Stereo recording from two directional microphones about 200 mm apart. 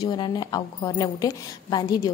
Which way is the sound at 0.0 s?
20° left (ahead or behind).